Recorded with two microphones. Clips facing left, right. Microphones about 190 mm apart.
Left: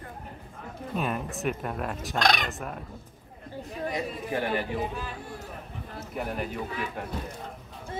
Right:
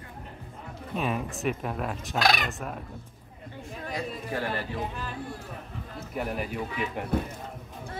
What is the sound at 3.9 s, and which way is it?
Speech, 20° left (ahead or behind).